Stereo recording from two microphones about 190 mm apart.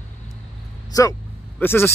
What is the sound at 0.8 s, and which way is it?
Speech, 20° left (ahead or behind).